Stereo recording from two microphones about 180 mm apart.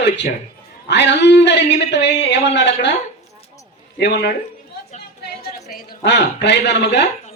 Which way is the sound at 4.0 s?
75° left (ahead or behind).